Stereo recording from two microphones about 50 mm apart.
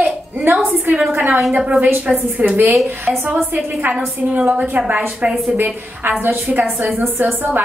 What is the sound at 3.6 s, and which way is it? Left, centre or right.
A woman's voice, right.